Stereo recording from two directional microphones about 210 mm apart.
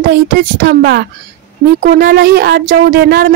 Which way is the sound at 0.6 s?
50° right (ahead or behind).